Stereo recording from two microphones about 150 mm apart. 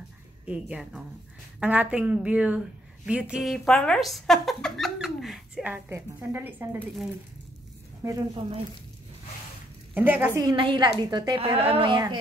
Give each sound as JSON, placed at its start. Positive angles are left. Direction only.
{"t": 0.5, "sound": "a woman's voice", "side_deg": -5}
{"t": 8.0, "sound": "speech", "side_deg": -20}
{"t": 9.9, "sound": "a woman's voice", "side_deg": -10}
{"t": 10.4, "sound": "speech", "side_deg": -30}